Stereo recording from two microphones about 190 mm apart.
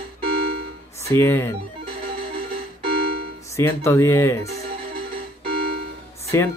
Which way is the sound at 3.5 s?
15° left (ahead or behind).